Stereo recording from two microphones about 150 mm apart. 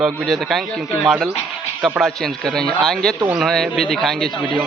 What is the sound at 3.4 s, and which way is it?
Speech, centre (ahead or behind).